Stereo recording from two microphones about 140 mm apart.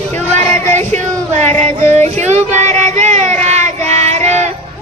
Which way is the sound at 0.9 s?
55° right (ahead or behind).